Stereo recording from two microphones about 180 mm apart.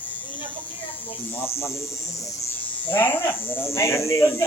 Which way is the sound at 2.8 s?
10° left (ahead or behind).